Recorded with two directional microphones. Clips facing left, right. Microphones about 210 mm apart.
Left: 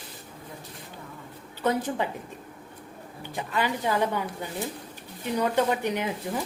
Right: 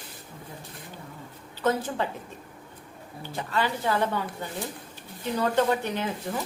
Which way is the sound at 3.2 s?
15° left (ahead or behind).